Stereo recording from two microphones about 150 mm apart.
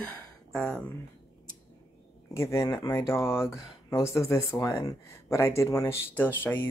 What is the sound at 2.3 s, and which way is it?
Speech, 20° left (ahead or behind).